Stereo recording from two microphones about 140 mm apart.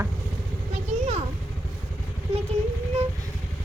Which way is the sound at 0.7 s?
50° right (ahead or behind).